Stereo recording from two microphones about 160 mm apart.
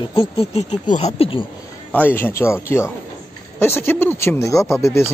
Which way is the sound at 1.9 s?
10° left (ahead or behind).